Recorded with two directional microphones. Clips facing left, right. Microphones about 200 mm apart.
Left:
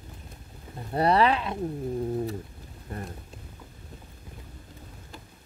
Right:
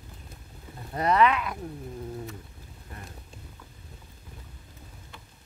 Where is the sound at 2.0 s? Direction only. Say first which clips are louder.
Left 8 dB; 35° left (ahead or behind).